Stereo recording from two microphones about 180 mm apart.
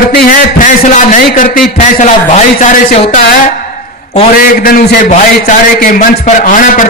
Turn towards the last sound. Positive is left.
turn(degrees=50)  # may be behind; listen again after turning